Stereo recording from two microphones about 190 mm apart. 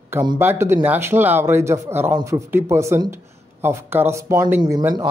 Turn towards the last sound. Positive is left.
turn(degrees=-20)  # may be behind; listen again after turning